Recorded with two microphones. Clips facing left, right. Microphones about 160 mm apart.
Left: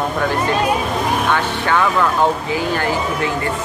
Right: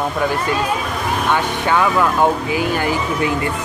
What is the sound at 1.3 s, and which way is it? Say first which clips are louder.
Speech: even; 15° right (ahead or behind).